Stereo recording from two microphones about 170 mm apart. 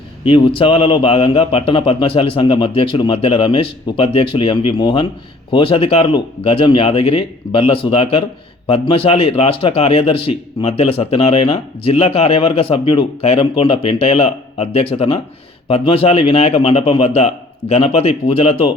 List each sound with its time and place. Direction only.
0.3 s a man's voice: 30° left (ahead or behind)